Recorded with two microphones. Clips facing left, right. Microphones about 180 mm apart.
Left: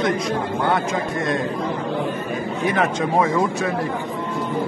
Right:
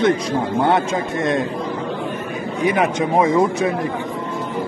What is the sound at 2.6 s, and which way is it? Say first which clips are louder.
A man's voice: right 3 dB; 15° right (ahead or behind).